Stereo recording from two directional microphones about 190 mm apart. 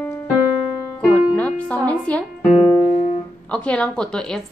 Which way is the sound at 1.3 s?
5° left (ahead or behind).